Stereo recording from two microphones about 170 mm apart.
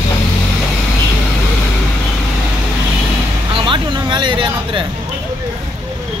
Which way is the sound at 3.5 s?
30° right (ahead or behind).